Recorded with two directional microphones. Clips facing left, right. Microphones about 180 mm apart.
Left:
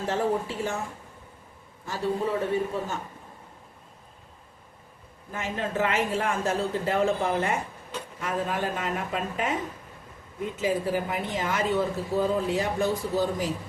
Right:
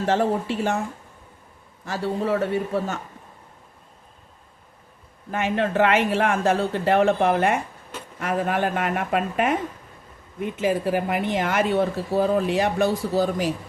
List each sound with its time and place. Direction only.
0.0 s speech: 75° right (ahead or behind)
1.9 s speech: 75° right (ahead or behind)
5.3 s speech: 70° right (ahead or behind)